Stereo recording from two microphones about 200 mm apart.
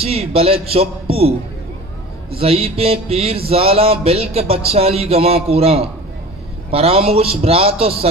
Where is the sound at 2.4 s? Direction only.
30° right (ahead or behind).